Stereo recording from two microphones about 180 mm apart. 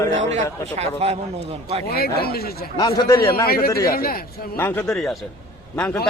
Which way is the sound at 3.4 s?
55° left (ahead or behind).